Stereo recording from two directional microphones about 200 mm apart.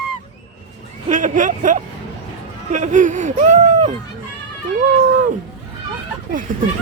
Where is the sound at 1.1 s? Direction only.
40° right (ahead or behind).